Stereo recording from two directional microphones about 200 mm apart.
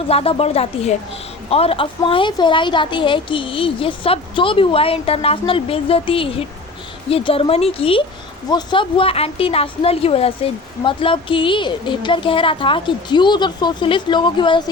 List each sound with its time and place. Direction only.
0.1 s speech: 30° left (ahead or behind)